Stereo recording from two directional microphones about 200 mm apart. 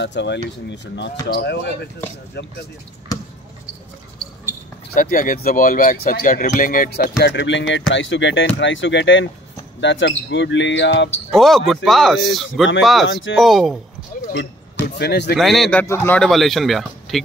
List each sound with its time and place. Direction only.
0.0 s speech: 60° left (ahead or behind)
3.1 s basketball bounce: 15° left (ahead or behind)
4.9 s speech: 45° left (ahead or behind); by 11.1 s 65° left (ahead or behind)
11.3 s a man's voice: centre (ahead or behind)
15.0 s speech: 55° left (ahead or behind)
15.3 s a man's voice: centre (ahead or behind)